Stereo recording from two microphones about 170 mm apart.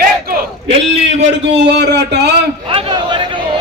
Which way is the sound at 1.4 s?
85° right.